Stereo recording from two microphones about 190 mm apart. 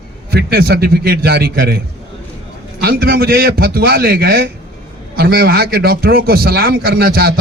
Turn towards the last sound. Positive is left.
turn(degrees=-55)  # may be behind; listen again after turning